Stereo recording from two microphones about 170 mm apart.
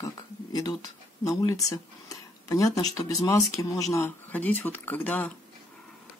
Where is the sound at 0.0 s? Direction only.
20° left (ahead or behind).